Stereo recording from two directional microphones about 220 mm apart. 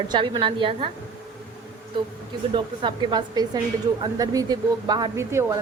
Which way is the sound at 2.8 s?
20° right (ahead or behind).